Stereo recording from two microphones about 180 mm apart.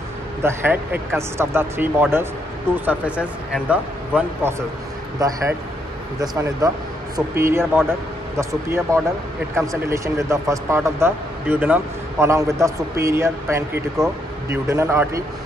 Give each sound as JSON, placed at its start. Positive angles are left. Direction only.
{"t": 0.4, "sound": "speech", "side_deg": -10}